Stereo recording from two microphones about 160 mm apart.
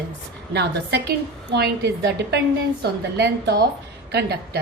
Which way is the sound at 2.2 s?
90° right.